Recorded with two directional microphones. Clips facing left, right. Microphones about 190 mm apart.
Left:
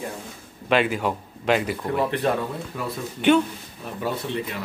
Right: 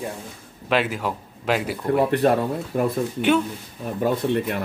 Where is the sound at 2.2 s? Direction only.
45° right (ahead or behind).